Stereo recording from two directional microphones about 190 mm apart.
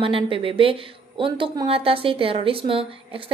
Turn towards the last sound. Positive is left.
turn(degrees=-30)  # may be behind; listen again after turning